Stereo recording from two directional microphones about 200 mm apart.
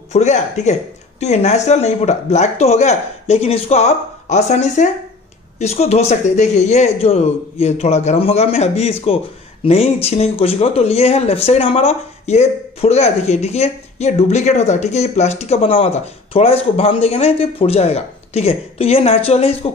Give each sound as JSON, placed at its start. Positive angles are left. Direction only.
{"t": 0.1, "sound": "speech", "side_deg": 35}